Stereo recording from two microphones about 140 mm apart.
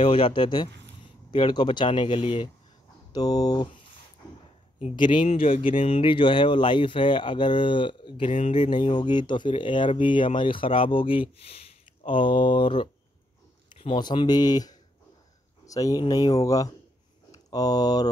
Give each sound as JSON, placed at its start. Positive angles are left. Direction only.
{"t": 0.1, "sound": "speech", "side_deg": 35}
{"t": 3.1, "sound": "speech", "side_deg": 30}
{"t": 4.9, "sound": "speech", "side_deg": 35}
{"t": 5.2, "sound": "speech", "side_deg": 45}